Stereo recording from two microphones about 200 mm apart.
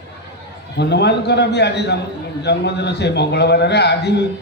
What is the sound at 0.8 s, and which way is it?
A man's voice, 55° left (ahead or behind).